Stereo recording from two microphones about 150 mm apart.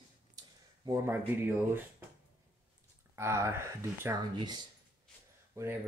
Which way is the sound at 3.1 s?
20° right (ahead or behind).